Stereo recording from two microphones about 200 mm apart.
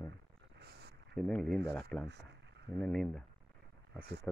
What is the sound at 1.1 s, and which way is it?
Speech, 5° left (ahead or behind).